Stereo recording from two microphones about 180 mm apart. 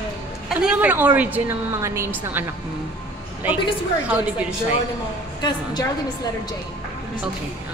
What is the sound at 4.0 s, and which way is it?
Speech, 5° right (ahead or behind).